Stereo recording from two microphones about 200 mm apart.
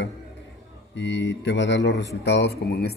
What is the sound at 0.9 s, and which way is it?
Speech, 65° left (ahead or behind).